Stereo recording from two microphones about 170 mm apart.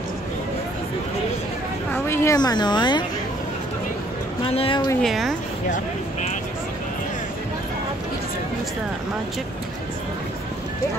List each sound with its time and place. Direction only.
2.0 s speech: 15° left (ahead or behind)
4.4 s speech: 35° left (ahead or behind)
5.0 s a woman's voice: centre (ahead or behind)